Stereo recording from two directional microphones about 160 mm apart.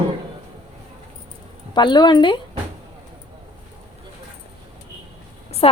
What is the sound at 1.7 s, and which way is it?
Speech, 30° left (ahead or behind).